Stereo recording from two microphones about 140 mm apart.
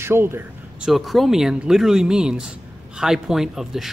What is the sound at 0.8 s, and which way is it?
Speech, centre (ahead or behind).